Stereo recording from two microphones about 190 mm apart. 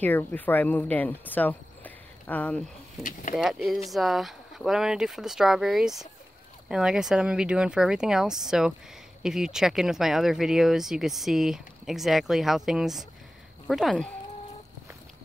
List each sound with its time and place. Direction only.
0.0 s speech: 10° left (ahead or behind)
3.0 s speech: 45° left (ahead or behind)
3.3 s speech: centre (ahead or behind)